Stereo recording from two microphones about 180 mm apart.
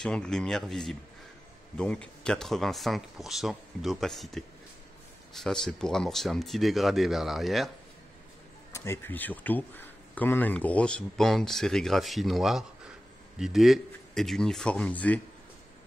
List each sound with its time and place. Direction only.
0.0 s speech: 5° left (ahead or behind)
8.7 s speech: 15° left (ahead or behind)